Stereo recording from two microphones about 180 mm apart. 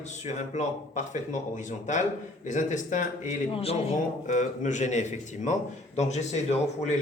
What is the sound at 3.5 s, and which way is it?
A man's voice, 35° left (ahead or behind).